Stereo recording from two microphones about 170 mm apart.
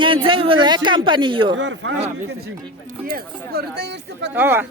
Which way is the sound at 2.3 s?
65° right (ahead or behind).